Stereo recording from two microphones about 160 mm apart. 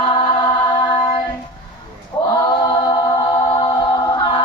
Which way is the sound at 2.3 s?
25° left (ahead or behind).